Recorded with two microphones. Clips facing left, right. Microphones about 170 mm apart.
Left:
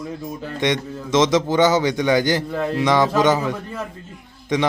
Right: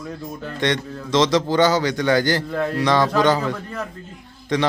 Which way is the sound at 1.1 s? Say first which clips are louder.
Left 1 dB; 20° left (ahead or behind).